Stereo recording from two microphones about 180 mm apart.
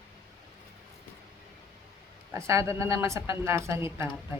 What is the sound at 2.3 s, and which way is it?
A woman's voice, 15° right (ahead or behind).